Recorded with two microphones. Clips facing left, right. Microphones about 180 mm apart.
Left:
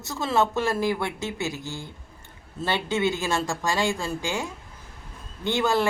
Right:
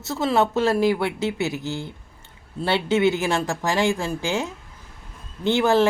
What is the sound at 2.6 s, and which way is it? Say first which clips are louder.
Speech: right 5 dB; 15° right (ahead or behind).